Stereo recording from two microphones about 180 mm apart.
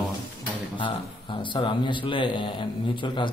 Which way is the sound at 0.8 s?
25° left (ahead or behind).